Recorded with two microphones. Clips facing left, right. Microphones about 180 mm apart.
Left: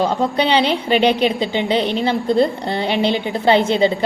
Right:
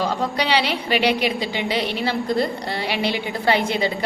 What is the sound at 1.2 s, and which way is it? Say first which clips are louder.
A woman's voice: left 5 dB; 25° left (ahead or behind).